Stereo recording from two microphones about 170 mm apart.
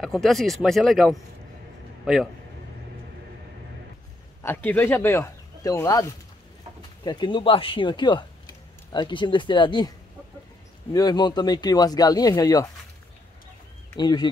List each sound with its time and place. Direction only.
0.0 s speech: centre (ahead or behind)
4.4 s speech: 10° left (ahead or behind)
7.1 s speech: 30° left (ahead or behind)
13.9 s speech: 25° left (ahead or behind)